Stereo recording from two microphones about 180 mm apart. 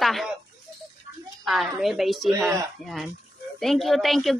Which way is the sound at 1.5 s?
Centre (ahead or behind).